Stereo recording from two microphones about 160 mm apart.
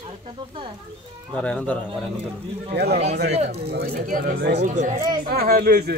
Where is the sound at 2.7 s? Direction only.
90° right.